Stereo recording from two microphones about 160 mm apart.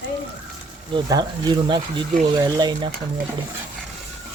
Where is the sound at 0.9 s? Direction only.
25° right (ahead or behind).